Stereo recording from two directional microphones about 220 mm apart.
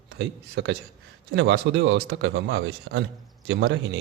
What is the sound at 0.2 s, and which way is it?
A man's voice, 55° right (ahead or behind).